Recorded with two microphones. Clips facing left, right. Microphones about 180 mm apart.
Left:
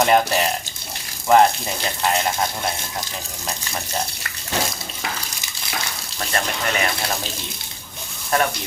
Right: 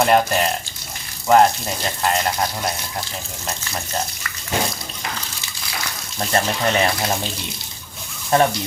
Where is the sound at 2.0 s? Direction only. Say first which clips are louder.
Even; centre (ahead or behind).